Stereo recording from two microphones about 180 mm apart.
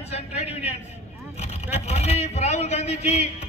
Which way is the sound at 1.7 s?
35° left (ahead or behind).